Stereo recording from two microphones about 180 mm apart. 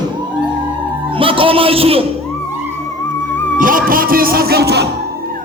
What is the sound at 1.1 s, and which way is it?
Speech, 30° right (ahead or behind).